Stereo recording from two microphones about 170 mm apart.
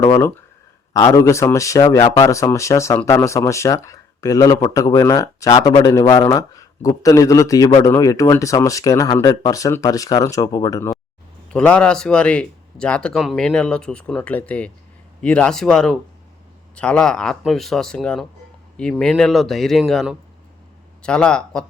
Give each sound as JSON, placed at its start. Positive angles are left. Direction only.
{"t": 0.9, "sound": "speech", "side_deg": 20}
{"t": 11.5, "sound": "speech", "side_deg": 5}